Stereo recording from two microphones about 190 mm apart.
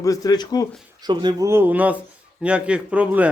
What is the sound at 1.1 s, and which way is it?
A man's voice, 25° right (ahead or behind).